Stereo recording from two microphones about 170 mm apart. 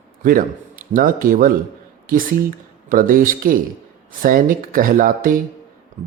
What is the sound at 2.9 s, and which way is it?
Speech, 55° right (ahead or behind).